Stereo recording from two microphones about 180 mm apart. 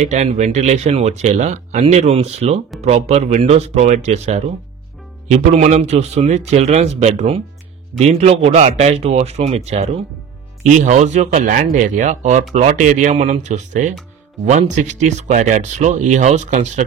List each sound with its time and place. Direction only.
0.0 s speech: 40° right (ahead or behind)